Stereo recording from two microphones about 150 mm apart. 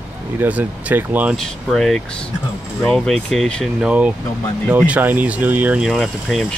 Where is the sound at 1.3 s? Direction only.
Centre (ahead or behind).